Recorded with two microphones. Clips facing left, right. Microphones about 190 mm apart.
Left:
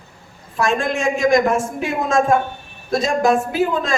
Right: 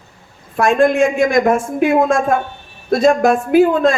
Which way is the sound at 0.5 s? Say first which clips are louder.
Right 7 dB; 55° right (ahead or behind).